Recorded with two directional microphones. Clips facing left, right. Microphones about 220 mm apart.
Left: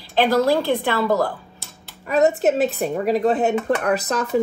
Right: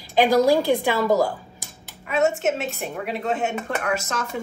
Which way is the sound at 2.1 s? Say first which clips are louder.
Left 4 dB; 35° left (ahead or behind).